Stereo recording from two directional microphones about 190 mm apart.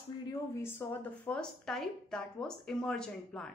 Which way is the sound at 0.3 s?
10° left (ahead or behind).